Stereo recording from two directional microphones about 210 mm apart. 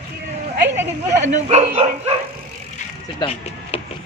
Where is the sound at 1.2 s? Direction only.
30° right (ahead or behind).